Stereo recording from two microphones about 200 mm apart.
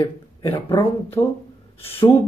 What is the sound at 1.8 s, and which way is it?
Speech, 30° left (ahead or behind).